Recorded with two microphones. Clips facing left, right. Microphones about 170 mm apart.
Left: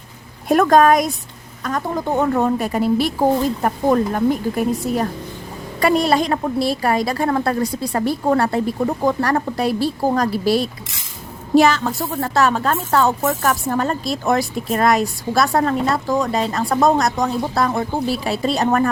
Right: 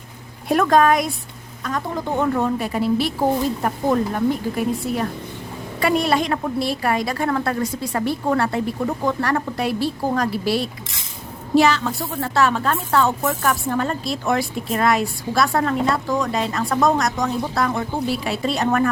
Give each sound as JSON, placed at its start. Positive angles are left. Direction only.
{"t": 0.4, "sound": "a woman's voice", "side_deg": 45}